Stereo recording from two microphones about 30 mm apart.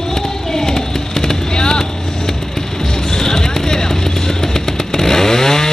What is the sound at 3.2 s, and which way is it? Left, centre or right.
Music, centre.